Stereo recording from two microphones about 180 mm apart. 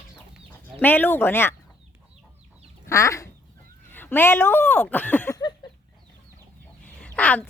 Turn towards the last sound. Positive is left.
turn(degrees=5)  # may be behind; listen again after turning